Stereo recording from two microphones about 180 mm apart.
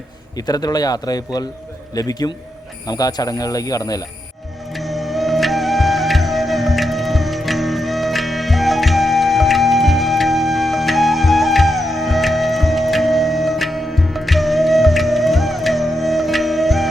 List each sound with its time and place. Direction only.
0.3 s speech: 20° left (ahead or behind)
4.7 s music: centre (ahead or behind)